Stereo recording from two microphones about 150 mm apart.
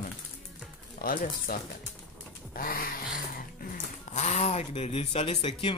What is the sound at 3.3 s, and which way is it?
Speech, 50° left (ahead or behind).